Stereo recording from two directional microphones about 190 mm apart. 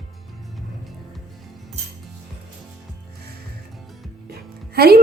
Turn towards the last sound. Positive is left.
turn(degrees=-55)  # may be behind; listen again after turning